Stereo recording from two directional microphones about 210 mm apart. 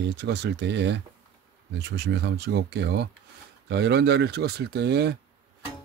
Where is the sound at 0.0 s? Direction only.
55° right (ahead or behind).